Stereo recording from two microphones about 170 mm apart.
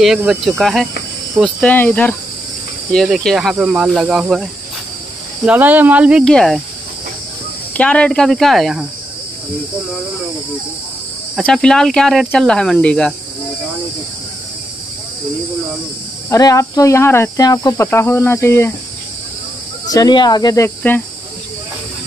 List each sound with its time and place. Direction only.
0.0 s speech: 5° right (ahead or behind)
7.7 s speech: 5° left (ahead or behind)
11.3 s speech: 5° left (ahead or behind)
16.3 s speech: 20° left (ahead or behind)
19.9 s speech: 25° left (ahead or behind)